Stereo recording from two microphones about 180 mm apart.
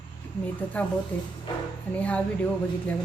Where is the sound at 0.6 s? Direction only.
10° left (ahead or behind).